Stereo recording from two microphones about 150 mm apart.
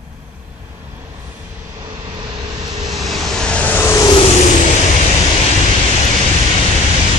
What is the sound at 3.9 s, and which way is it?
Vehicle, 30° left (ahead or behind).